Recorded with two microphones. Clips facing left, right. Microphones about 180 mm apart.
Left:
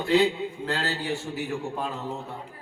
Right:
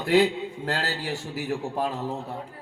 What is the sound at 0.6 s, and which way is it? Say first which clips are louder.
Speech: right 1 dB; 40° right (ahead or behind).